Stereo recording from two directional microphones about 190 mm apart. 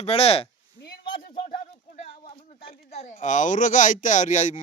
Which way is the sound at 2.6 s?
30° left (ahead or behind).